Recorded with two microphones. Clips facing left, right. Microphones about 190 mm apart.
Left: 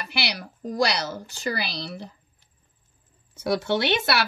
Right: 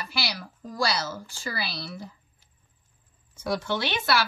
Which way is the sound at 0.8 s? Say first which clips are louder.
Right 1 dB; 65° left (ahead or behind).